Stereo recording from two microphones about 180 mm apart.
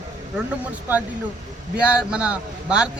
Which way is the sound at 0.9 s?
10° right (ahead or behind).